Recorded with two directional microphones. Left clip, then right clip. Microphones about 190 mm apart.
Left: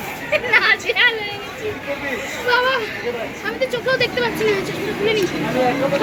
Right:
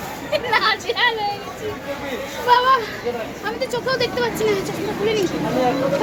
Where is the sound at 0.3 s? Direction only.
25° right (ahead or behind).